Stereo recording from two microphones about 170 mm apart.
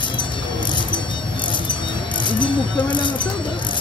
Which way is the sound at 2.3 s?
30° left (ahead or behind).